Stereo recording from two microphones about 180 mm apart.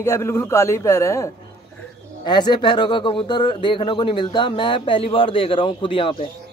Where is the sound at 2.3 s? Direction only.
25° left (ahead or behind).